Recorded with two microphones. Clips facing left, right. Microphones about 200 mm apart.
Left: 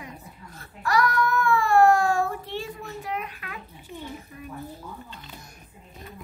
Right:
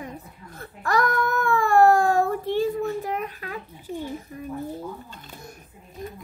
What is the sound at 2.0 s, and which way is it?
Child singing, 40° right (ahead or behind).